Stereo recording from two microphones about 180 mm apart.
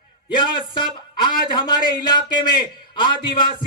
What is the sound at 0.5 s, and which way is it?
A man's voice, 25° left (ahead or behind).